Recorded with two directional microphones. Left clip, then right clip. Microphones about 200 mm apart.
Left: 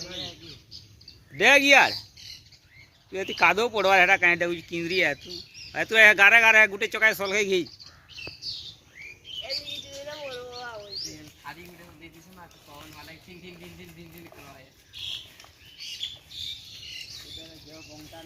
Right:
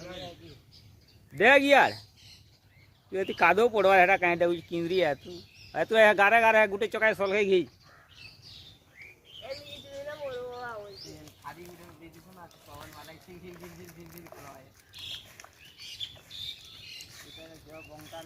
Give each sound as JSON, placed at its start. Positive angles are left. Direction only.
{"t": 1.4, "sound": "speech", "side_deg": -35}
{"t": 3.1, "sound": "speech", "side_deg": -50}
{"t": 10.3, "sound": "bird", "side_deg": -50}
{"t": 11.4, "sound": "a sound", "side_deg": -45}